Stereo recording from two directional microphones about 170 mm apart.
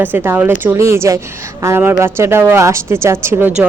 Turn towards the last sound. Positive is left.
turn(degrees=-10)  # may be behind; listen again after turning